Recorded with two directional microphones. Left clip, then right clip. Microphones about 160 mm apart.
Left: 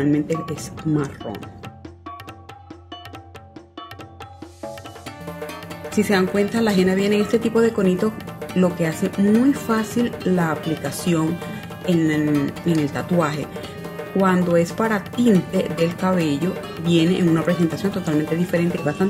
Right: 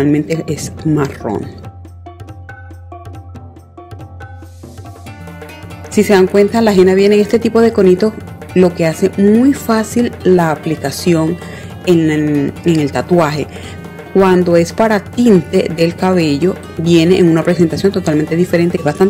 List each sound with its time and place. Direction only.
0.0 s speech: 45° right (ahead or behind)
5.9 s speech: 50° right (ahead or behind)